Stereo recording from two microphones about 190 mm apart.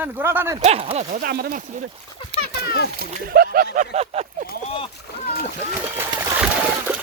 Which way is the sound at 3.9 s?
35° right (ahead or behind).